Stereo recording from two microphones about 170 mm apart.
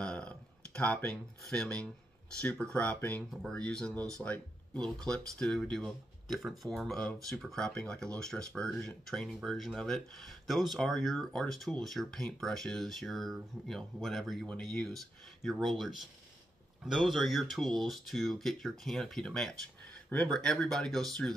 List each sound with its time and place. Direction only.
0.0 s music: 5° left (ahead or behind)
2.6 s speech: 10° left (ahead or behind)
3.9 s speech: 20° right (ahead or behind)
4.2 s speech: 5° left (ahead or behind)